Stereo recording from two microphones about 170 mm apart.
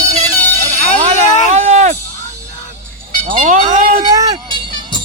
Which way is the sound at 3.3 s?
50° right (ahead or behind).